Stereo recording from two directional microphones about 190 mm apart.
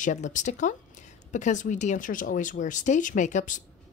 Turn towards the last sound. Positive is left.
turn(degrees=40)  # may be behind; listen again after turning